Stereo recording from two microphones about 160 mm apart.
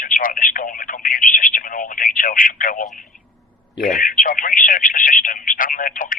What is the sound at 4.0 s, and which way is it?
Speech, 60° left (ahead or behind).